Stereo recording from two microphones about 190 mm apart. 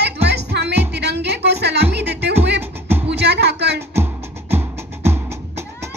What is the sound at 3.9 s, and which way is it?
Music, 10° right (ahead or behind).